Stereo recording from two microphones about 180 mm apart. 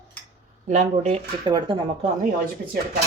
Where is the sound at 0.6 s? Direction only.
40° right (ahead or behind).